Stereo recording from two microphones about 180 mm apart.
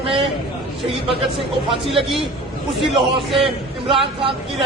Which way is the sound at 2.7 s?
Centre (ahead or behind).